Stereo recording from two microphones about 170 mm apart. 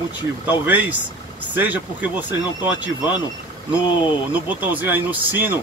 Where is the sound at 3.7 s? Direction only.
25° left (ahead or behind).